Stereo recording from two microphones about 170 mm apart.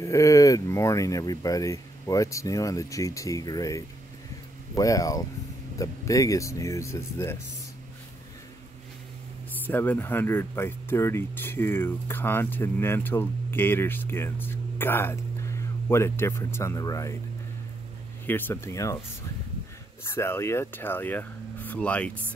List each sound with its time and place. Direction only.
0.0 s speech: 20° left (ahead or behind)
9.5 s speech: 10° left (ahead or behind)
18.2 s speech: 15° left (ahead or behind)
20.1 s speech: 15° left (ahead or behind)